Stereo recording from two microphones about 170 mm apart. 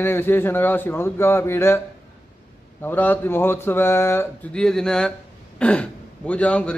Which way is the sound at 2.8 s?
10° left (ahead or behind).